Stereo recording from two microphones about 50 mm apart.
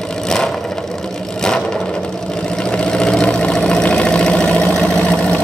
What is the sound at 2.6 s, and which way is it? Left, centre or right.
Vehicle, centre.